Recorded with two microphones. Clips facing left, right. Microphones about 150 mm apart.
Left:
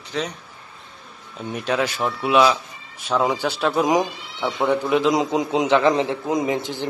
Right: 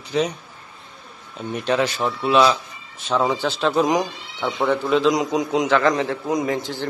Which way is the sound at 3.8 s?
20° left (ahead or behind).